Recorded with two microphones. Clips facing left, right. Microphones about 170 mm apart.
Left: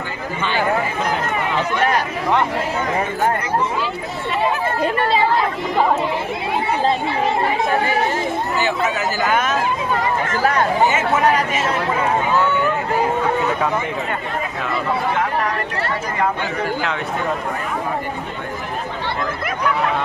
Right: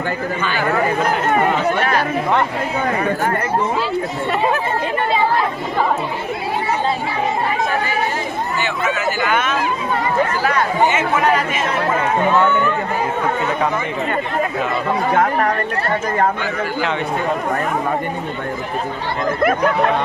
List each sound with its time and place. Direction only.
1.3 s run: 50° right (ahead or behind)
8.6 s speech: 40° left (ahead or behind)
15.1 s speech: 50° right (ahead or behind)
19.4 s speech: 50° right (ahead or behind)